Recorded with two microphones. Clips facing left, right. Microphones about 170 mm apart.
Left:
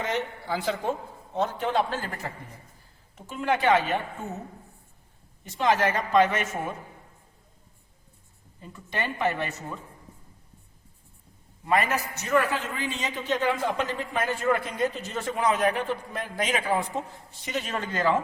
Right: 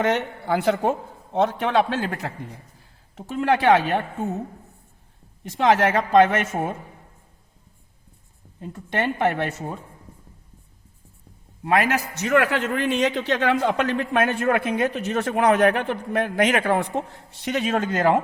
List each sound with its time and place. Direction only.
0.0 s a man's voice: 65° right (ahead or behind)
3.2 s speech: 90° right
5.4 s a man's voice: 80° right; by 6.7 s 65° right (ahead or behind)
8.6 s speech: 70° right (ahead or behind)
11.6 s a man's voice: 90° right; by 17.8 s 70° right (ahead or behind)
17.9 s speech: 55° right (ahead or behind)